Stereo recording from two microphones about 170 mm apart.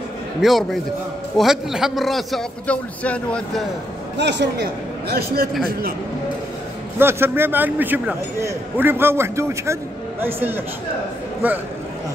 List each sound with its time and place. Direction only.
0.4 s a man's voice: centre (ahead or behind)
4.2 s a man's voice: 90° right
5.0 s a man's voice: 65° right (ahead or behind)
7.0 s a man's voice: 15° right (ahead or behind)